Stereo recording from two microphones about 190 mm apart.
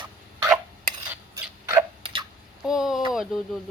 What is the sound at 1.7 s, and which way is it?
Tick-tock, 20° right (ahead or behind).